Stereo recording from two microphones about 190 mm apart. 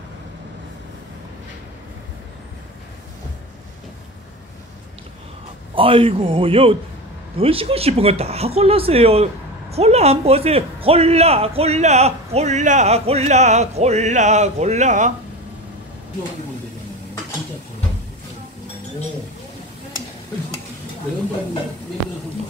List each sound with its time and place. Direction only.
5.8 s a man's voice: 30° right (ahead or behind)